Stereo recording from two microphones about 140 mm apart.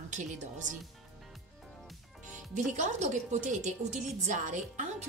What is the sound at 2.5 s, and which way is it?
A woman's voice, 55° right (ahead or behind).